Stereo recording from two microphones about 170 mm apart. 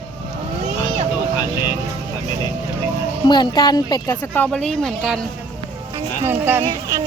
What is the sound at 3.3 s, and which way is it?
A woman's voice, 25° left (ahead or behind).